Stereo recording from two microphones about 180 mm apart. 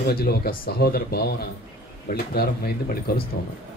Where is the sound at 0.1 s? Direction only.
60° left (ahead or behind).